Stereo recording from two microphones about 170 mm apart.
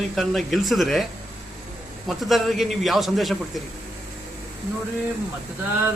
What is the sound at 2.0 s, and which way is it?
A man's voice, centre (ahead or behind).